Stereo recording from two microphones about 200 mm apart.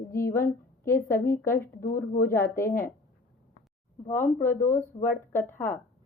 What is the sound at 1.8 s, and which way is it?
Speech, 40° left (ahead or behind).